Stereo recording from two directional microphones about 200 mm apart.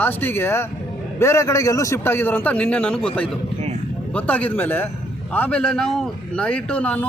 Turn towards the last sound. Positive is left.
turn(degrees=10)  # may be behind; listen again after turning